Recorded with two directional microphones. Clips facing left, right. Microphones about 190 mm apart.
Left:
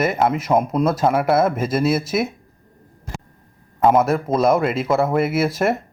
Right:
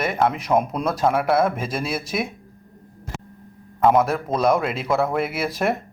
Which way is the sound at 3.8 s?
5° left (ahead or behind).